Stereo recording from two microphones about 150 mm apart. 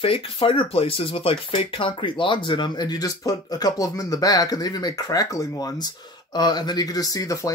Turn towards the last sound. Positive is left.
turn(degrees=25)  # may be behind; listen again after turning